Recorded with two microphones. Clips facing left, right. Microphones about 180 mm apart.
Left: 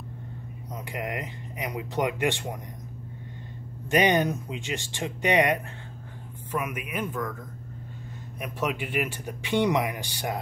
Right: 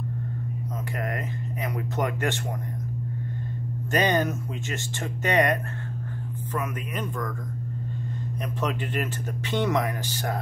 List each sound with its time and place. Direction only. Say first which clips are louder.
0.9 s speech: even; 15° left (ahead or behind)
3.9 s speech: left 1 dB; 15° left (ahead or behind)
8.4 s speech: even; 10° left (ahead or behind)